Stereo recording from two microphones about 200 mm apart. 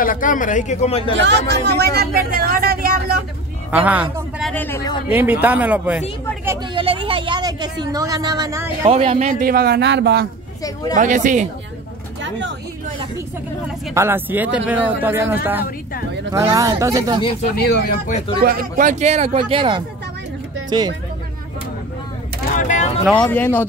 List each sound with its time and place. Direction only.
0.0 s speech: 40° left (ahead or behind)
1.2 s speech: 55° right (ahead or behind)
3.7 s a man's voice: 10° right (ahead or behind); by 4.9 s 10° left (ahead or behind)
5.0 s a man's voice: 10° right (ahead or behind)
6.7 s a man's voice: 25° right (ahead or behind)
8.8 s speech: 30° right (ahead or behind); by 10.2 s 55° right (ahead or behind)
10.6 s speech: 20° left (ahead or behind)
11.0 s speech: 40° right (ahead or behind)
13.9 s a man's voice: 10° right (ahead or behind)
17.6 s speech: 55° left (ahead or behind)
18.4 s speech: 45° right (ahead or behind); by 20.9 s 20° right (ahead or behind)
22.6 s a sound: 35° left (ahead or behind)
23.0 s speech: 5° left (ahead or behind)